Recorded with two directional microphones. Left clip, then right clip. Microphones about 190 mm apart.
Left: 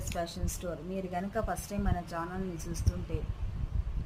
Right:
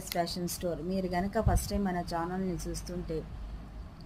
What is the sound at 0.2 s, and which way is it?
A woman's voice, 25° right (ahead or behind).